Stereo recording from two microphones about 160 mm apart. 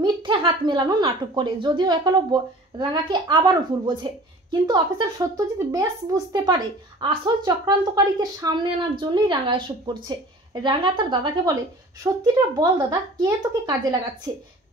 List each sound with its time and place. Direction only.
0.0 s speech: 30° right (ahead or behind)
12.1 s a woman's voice: 15° right (ahead or behind)